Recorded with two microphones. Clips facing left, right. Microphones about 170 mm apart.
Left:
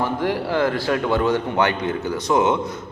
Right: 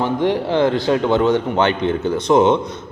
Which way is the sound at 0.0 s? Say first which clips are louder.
Right 4 dB; 20° right (ahead or behind).